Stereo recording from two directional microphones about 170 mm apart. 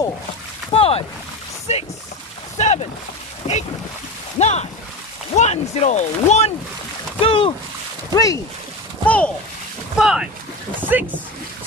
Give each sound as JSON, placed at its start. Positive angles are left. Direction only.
{"t": 0.7, "sound": "boat", "side_deg": 35}
{"t": 1.7, "sound": "speech", "side_deg": 40}
{"t": 2.5, "sound": "boat", "side_deg": 40}
{"t": 4.4, "sound": "a sound", "side_deg": 40}
{"t": 5.3, "sound": "speech", "side_deg": 40}
{"t": 7.2, "sound": "boat", "side_deg": 30}
{"t": 8.1, "sound": "speech", "side_deg": 20}
{"t": 9.0, "sound": "a sound", "side_deg": 10}
{"t": 9.9, "sound": "speech", "side_deg": -5}